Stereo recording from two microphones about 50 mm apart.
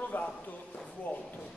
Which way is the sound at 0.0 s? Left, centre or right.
Left.